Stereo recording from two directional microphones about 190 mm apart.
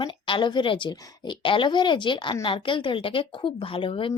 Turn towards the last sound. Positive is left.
turn(degrees=25)  # may be behind; listen again after turning